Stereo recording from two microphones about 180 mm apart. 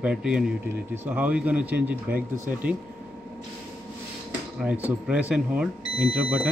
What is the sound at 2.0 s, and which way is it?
Speech, 55° right (ahead or behind).